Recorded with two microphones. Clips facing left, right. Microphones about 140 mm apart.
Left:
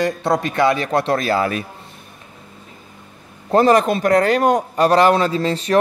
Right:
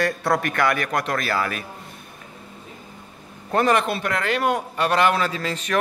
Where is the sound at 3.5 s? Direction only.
35° left (ahead or behind).